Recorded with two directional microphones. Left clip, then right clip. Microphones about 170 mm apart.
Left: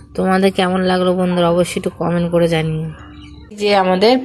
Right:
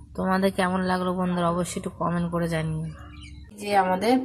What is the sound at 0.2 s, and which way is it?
Speech, 10° left (ahead or behind).